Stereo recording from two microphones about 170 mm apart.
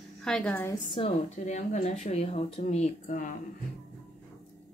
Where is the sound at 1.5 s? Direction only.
45° left (ahead or behind).